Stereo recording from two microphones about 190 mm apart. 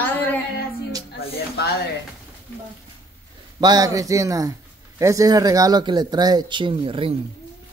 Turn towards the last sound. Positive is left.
turn(degrees=-25)  # may be behind; listen again after turning